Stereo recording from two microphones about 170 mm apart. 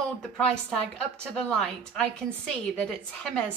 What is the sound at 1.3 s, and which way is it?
Speech, 5° left (ahead or behind).